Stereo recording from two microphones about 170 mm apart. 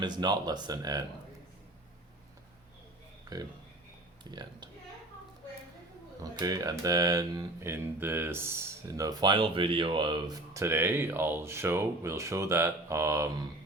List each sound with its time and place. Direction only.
0.0 s speech: 25° right (ahead or behind)
3.3 s a sound: 25° right (ahead or behind)
4.2 s speech: 25° right (ahead or behind)
6.2 s speech: 20° right (ahead or behind)